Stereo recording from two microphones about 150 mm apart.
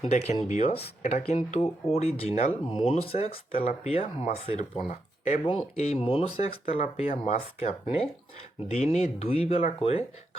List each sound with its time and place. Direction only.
0.1 s speech: 50° left (ahead or behind)
9.6 s speech: 60° left (ahead or behind)